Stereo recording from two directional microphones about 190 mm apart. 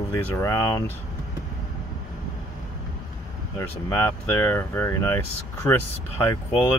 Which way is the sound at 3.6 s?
15° left (ahead or behind).